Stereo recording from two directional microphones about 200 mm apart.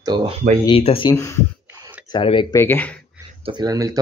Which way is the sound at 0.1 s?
25° right (ahead or behind).